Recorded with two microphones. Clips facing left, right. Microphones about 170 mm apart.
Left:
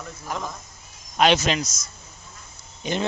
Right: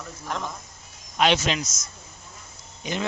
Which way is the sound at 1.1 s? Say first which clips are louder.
Left 2 dB; 45° left (ahead or behind).